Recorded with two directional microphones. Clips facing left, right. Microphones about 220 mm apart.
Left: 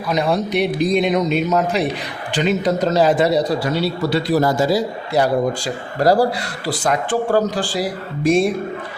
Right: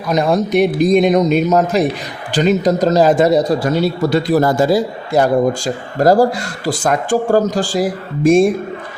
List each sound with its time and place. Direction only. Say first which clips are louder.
0.1 s a man's voice: right 4 dB; 45° right (ahead or behind)